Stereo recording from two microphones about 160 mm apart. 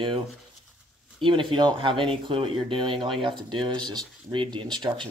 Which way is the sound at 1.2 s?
30° right (ahead or behind).